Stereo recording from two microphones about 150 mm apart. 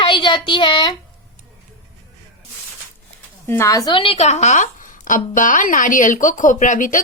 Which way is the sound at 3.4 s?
15° left (ahead or behind).